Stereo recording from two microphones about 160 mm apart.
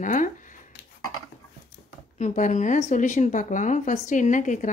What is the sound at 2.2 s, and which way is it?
A woman's voice, 45° left (ahead or behind).